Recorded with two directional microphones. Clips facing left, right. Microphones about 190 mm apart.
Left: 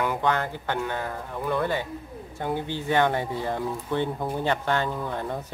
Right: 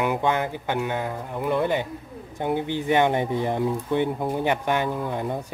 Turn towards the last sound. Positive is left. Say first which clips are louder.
# right 3 dB
turn(degrees=-15)  # may be behind; listen again after turning